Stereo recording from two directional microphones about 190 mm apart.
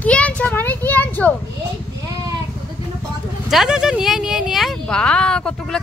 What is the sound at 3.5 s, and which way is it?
Speech, centre (ahead or behind).